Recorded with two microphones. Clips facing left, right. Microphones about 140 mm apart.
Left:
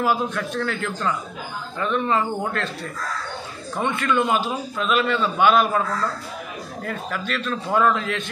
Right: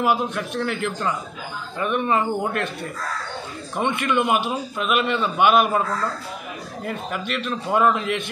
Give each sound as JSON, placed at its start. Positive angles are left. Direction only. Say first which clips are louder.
{"t": 0.0, "sound": "speech", "louder": "right 1 dB", "side_deg": -15}
{"t": 7.1, "sound": "speech", "louder": "left 1 dB", "side_deg": -15}